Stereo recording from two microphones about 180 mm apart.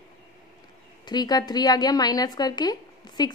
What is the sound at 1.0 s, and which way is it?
A woman's voice, 20° left (ahead or behind).